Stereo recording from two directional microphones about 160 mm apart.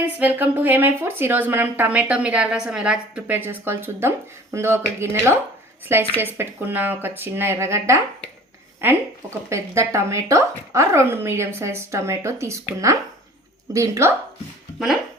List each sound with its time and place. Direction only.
0.0 s speech: 10° right (ahead or behind)